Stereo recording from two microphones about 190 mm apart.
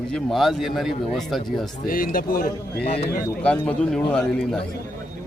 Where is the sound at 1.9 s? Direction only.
50° left (ahead or behind).